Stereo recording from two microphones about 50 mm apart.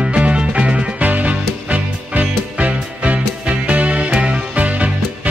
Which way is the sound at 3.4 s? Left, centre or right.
Centre.